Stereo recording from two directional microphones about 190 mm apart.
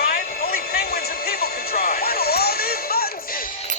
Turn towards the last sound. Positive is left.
turn(degrees=55)  # may be behind; listen again after turning